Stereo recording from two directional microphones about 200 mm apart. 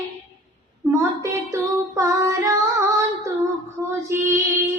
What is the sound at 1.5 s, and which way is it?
Child singing, 15° right (ahead or behind).